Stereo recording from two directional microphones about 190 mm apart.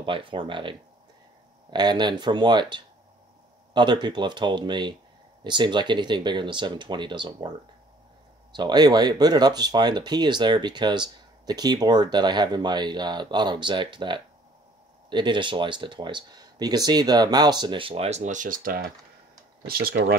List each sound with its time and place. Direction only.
0.0 s speech: 25° right (ahead or behind)
8.5 s speech: 20° right (ahead or behind); by 20.0 s 50° right (ahead or behind)